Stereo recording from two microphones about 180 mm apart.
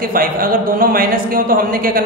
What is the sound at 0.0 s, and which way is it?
Speech, 55° right (ahead or behind).